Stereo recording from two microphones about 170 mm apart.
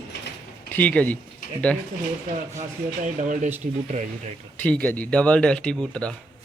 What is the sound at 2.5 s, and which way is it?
Speech, 50° right (ahead or behind).